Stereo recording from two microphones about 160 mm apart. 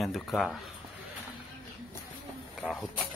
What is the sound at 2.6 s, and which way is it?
Speech, centre (ahead or behind).